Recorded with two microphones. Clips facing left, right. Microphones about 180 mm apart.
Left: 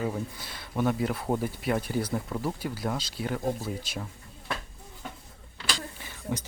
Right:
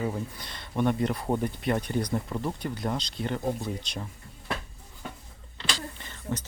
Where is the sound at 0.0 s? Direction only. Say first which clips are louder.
Even; 5° left (ahead or behind).